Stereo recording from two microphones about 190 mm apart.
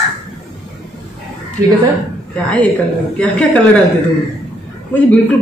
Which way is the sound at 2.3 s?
5° left (ahead or behind).